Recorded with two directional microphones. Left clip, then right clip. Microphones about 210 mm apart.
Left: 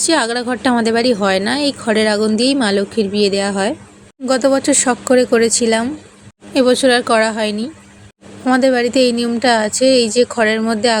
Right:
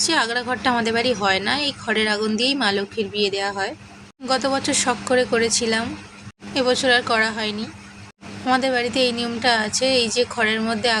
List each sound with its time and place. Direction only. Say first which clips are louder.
0.0 s speech: left 5 dB; 30° left (ahead or behind)